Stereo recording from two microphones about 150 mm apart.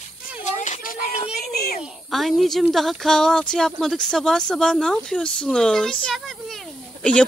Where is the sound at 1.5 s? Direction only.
90° left.